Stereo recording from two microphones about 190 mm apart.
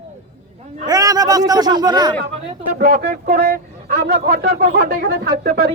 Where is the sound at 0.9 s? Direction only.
20° right (ahead or behind).